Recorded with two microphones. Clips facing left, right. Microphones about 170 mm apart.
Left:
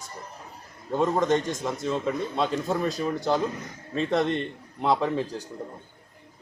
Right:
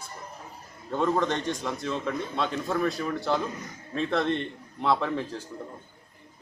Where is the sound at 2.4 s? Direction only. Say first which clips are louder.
Even; 20° left (ahead or behind).